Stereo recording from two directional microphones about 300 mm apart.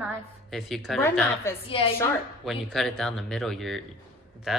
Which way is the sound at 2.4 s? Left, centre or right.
Centre.